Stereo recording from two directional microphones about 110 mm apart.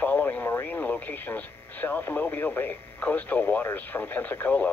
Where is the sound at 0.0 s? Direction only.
15° left (ahead or behind).